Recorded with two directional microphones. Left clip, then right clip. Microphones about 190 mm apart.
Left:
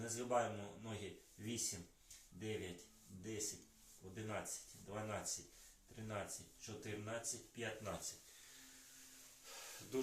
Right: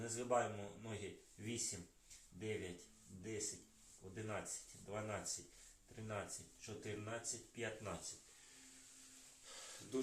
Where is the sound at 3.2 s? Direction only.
10° left (ahead or behind).